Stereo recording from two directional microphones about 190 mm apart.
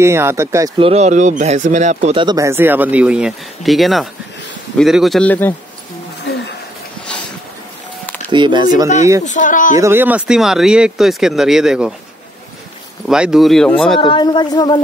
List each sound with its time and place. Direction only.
0.0 s speech: 15° right (ahead or behind)
0.7 s speech: 30° right (ahead or behind)
2.2 s speech: 15° right (ahead or behind); by 5.5 s 10° left (ahead or behind)
8.3 s speech: 25° right (ahead or behind)
9.2 s speech: 40° left (ahead or behind)
9.8 s speech: 10° right (ahead or behind)
13.1 s speech: 5° right (ahead or behind)
13.9 s speech: 25° left (ahead or behind)